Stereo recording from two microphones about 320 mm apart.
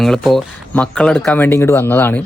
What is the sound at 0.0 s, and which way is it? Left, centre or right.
Speech, centre.